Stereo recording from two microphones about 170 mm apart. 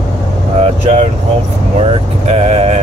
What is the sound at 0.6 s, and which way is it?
Speech, 40° right (ahead or behind).